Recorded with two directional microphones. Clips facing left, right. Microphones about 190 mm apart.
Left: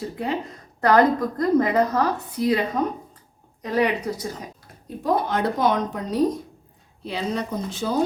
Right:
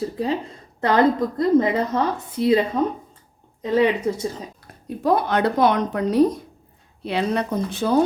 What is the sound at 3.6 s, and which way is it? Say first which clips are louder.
Speech: right 4 dB; 25° right (ahead or behind).